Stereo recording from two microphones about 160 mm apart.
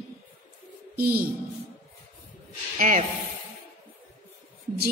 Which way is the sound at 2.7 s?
40° right (ahead or behind).